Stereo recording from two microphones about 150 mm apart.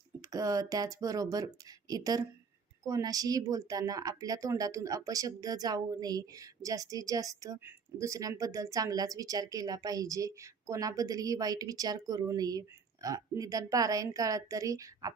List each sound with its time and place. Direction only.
0.2 s a woman's voice: 25° right (ahead or behind)